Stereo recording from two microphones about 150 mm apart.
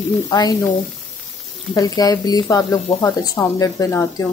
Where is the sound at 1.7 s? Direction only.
25° left (ahead or behind).